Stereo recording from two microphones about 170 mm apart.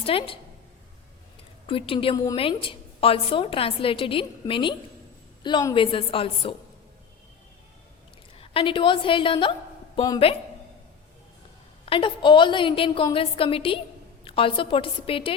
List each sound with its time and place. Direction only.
0.0 s a woman's voice: 30° left (ahead or behind)
1.6 s a woman's voice: 30° left (ahead or behind)
2.1 s a woman's voice: 20° left (ahead or behind)
2.4 s a woman's voice: 30° left (ahead or behind)
8.4 s a woman's voice: 30° left (ahead or behind)
11.9 s a woman's voice: 30° left (ahead or behind)